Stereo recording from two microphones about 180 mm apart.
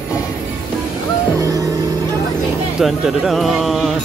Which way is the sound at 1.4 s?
20° right (ahead or behind).